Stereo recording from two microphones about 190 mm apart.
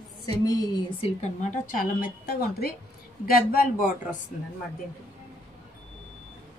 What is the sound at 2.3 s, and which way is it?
A woman's voice, 55° left (ahead or behind).